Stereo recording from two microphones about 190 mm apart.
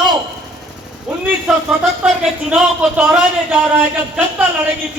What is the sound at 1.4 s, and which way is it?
Speech, 5° right (ahead or behind).